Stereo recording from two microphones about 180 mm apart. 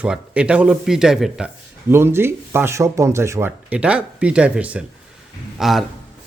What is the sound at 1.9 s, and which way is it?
Speech, 15° right (ahead or behind).